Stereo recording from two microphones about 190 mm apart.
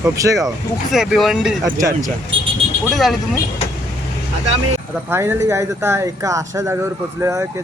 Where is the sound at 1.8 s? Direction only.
15° right (ahead or behind).